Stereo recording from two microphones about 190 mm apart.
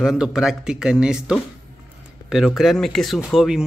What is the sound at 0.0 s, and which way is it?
A man's voice, centre (ahead or behind).